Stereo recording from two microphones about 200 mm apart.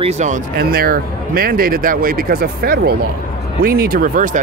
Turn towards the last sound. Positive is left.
turn(degrees=-45)  # may be behind; listen again after turning